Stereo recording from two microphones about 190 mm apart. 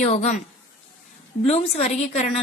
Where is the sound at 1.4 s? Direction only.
35° left (ahead or behind).